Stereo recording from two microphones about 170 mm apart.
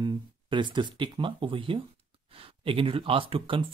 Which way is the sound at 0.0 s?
25° right (ahead or behind).